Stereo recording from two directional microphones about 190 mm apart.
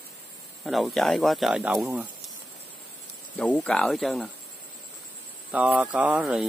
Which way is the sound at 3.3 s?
5° left (ahead or behind).